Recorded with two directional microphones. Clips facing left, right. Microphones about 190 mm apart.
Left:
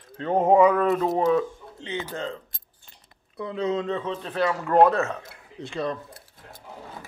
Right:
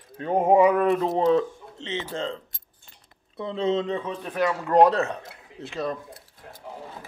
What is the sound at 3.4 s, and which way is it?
Speech, 25° right (ahead or behind).